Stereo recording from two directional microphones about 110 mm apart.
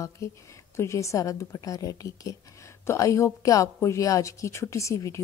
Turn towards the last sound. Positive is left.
turn(degrees=30)  # may be behind; listen again after turning